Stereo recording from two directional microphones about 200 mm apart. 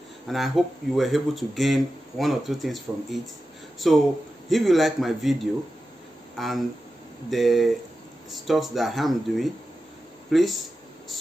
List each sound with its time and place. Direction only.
0.3 s speech: centre (ahead or behind)